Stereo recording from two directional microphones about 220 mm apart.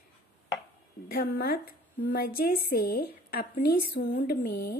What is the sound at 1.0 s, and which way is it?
Speech, 45° left (ahead or behind).